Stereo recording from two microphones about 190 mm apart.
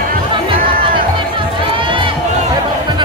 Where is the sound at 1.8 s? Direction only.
25° right (ahead or behind).